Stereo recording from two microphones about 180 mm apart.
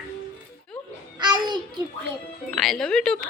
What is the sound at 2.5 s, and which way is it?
Speech, 5° left (ahead or behind).